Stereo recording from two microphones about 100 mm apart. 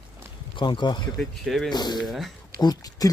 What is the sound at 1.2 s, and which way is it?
Speech, centre (ahead or behind).